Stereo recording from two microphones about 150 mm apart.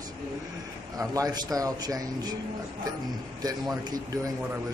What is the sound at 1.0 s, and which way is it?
A man's voice, 25° right (ahead or behind).